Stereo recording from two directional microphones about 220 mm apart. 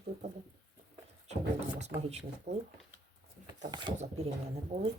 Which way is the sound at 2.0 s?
30° right (ahead or behind).